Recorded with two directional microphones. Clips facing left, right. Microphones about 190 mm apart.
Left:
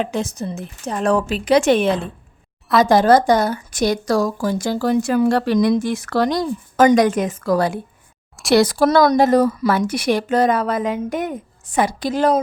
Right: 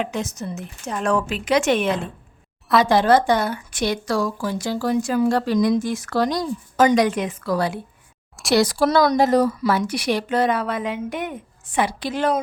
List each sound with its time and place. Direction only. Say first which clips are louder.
0.0 s speech: left 3 dB; 30° left (ahead or behind)
2.8 s speech: left 4 dB; 45° left (ahead or behind)